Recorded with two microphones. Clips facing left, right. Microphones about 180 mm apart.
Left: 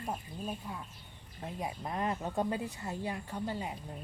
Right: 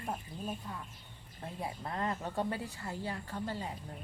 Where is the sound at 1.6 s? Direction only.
15° left (ahead or behind).